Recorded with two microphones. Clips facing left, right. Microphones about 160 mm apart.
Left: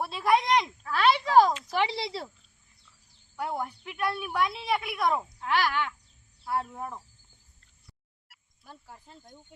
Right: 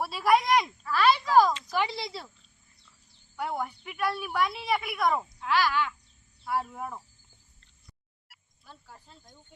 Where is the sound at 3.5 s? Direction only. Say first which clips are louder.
Even; centre (ahead or behind).